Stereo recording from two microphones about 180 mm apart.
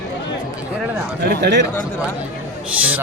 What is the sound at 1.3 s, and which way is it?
Speech, 70° right (ahead or behind).